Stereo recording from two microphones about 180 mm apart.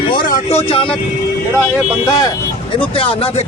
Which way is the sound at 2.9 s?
30° left (ahead or behind).